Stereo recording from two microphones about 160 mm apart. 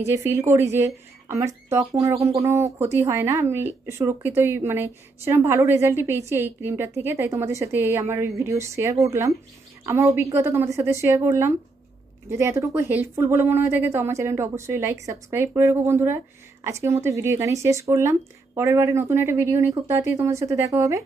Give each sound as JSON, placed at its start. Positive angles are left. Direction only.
{"t": 0.0, "sound": "a woman's voice", "side_deg": -20}